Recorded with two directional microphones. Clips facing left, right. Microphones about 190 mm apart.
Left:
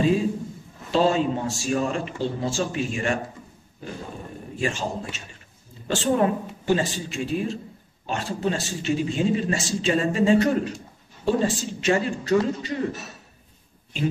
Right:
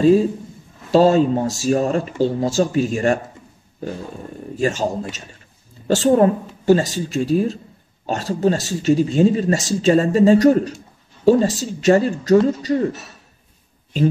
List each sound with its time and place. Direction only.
0.9 s speech: 40° right (ahead or behind)
4.6 s speech: 40° right (ahead or behind)